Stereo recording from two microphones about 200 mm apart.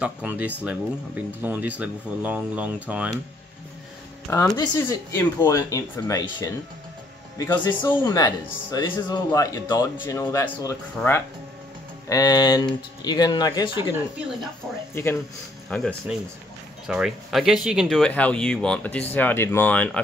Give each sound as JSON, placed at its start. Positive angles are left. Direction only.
{"t": 0.0, "sound": "speech", "side_deg": -10}
{"t": 4.6, "sound": "speech", "side_deg": 15}
{"t": 15.7, "sound": "speech", "side_deg": 5}